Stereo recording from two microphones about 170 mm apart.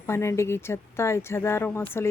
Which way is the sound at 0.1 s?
15° left (ahead or behind).